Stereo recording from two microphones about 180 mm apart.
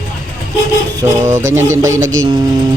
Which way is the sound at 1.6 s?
20° right (ahead or behind).